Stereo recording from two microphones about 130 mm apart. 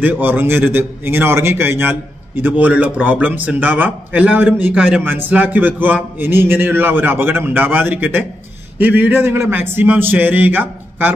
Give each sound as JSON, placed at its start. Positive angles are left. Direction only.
{"t": 0.0, "sound": "a man's voice", "side_deg": -15}